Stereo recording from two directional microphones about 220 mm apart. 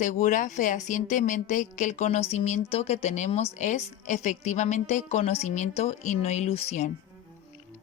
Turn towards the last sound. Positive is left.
turn(degrees=30)  # may be behind; listen again after turning